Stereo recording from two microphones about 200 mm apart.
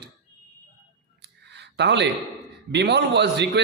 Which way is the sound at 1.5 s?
60° right (ahead or behind).